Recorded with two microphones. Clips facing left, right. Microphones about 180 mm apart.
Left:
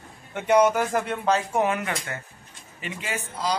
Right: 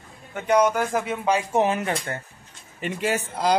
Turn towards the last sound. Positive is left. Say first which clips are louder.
# right 6 dB
turn(degrees=-55)  # may be behind; listen again after turning